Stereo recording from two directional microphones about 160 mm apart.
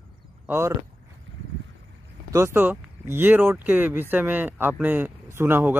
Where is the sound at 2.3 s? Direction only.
15° right (ahead or behind).